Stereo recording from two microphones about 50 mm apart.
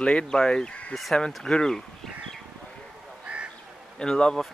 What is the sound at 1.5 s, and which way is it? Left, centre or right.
Bird, centre.